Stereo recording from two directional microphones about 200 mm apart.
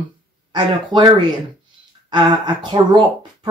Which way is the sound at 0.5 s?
20° right (ahead or behind).